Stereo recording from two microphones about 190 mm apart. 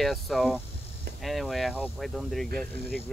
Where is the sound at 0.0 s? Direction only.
Centre (ahead or behind).